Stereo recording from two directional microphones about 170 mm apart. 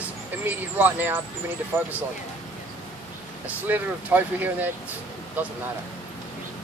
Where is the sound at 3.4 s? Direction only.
10° right (ahead or behind).